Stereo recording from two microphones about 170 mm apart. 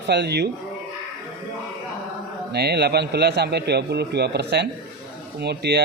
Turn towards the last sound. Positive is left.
turn(degrees=-75)  # may be behind; listen again after turning